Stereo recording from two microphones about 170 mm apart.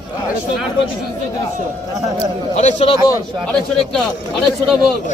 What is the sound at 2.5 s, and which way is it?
Speech, 40° left (ahead or behind).